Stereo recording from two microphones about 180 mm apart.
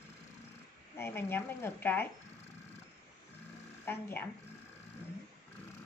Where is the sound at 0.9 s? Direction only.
15° left (ahead or behind).